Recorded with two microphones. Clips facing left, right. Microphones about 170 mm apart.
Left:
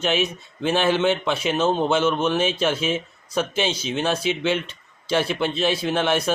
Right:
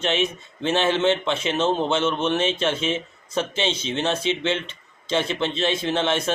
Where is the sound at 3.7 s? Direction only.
30° right (ahead or behind).